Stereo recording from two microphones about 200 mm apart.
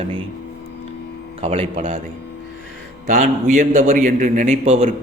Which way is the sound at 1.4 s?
30° right (ahead or behind).